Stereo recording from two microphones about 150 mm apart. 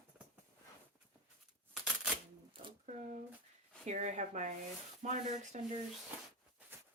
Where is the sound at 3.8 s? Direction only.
55° right (ahead or behind).